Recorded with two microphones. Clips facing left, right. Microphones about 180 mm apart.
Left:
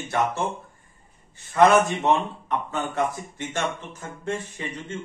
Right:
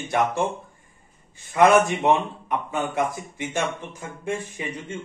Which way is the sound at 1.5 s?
10° right (ahead or behind).